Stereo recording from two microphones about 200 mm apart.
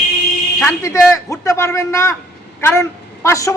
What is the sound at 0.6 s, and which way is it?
A man's voice, 10° left (ahead or behind).